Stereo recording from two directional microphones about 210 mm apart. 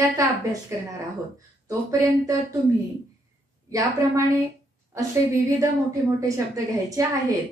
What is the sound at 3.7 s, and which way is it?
A woman's voice, 15° right (ahead or behind).